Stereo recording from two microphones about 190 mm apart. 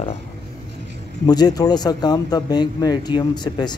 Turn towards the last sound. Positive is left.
turn(degrees=20)  # may be behind; listen again after turning